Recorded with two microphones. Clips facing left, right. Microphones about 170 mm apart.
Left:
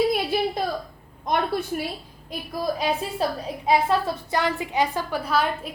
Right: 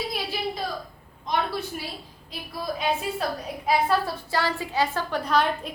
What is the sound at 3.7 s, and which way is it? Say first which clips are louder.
A woman's voice: left 2 dB; 20° left (ahead or behind).